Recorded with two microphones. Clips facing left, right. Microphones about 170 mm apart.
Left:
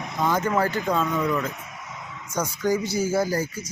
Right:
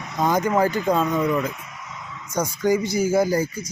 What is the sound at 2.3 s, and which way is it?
Speech, 10° right (ahead or behind).